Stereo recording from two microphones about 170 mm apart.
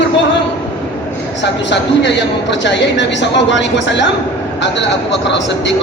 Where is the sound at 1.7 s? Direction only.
90° left.